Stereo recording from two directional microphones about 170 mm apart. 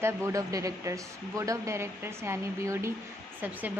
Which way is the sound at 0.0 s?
20° right (ahead or behind).